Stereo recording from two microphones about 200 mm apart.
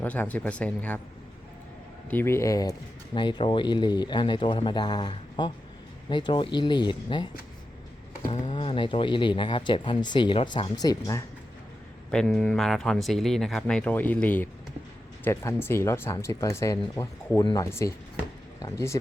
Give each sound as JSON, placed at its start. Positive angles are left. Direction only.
{"t": 0.0, "sound": "speech", "side_deg": 10}
{"t": 2.0, "sound": "speech", "side_deg": 10}
{"t": 8.3, "sound": "speech", "side_deg": 25}
{"t": 12.1, "sound": "speech", "side_deg": 5}